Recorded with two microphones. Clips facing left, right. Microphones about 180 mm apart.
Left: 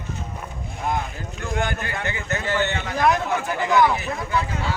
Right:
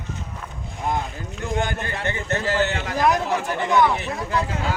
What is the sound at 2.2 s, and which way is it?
Speech, 40° right (ahead or behind).